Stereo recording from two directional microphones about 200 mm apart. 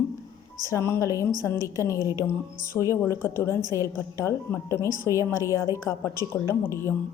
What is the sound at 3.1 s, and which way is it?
A woman's voice, 10° left (ahead or behind).